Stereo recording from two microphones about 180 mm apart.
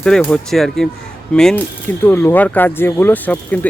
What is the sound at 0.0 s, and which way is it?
Speech, 5° left (ahead or behind).